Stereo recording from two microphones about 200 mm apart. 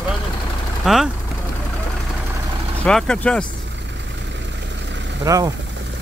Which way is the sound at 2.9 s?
5° left (ahead or behind).